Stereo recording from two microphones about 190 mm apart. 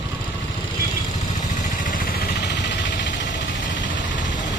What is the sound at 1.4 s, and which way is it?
Vehicle, 40° left (ahead or behind).